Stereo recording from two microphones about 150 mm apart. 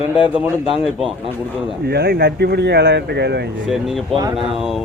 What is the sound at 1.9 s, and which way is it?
Speech, 90° right.